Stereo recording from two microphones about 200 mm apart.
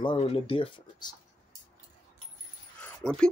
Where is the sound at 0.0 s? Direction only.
25° left (ahead or behind).